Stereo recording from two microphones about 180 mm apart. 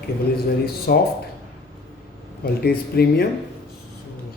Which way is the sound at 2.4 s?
60° left (ahead or behind).